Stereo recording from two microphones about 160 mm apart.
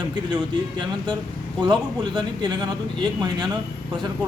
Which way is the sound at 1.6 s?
25° right (ahead or behind).